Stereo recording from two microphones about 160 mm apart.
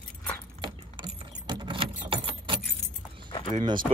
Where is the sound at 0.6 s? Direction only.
30° right (ahead or behind).